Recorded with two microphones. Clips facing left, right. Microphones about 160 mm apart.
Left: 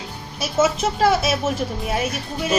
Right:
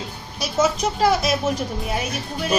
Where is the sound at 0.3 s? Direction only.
5° left (ahead or behind).